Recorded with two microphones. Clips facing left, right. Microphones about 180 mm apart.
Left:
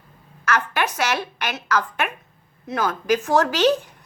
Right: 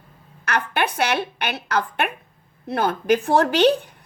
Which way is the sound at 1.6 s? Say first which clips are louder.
Even; 60° right (ahead or behind).